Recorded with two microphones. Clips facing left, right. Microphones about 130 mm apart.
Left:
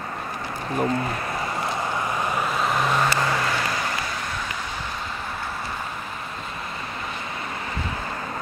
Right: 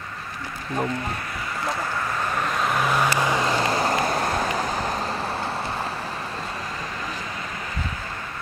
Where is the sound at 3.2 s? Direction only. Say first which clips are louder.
Right 2 dB; 15° right (ahead or behind); by 4.9 s 40° right (ahead or behind).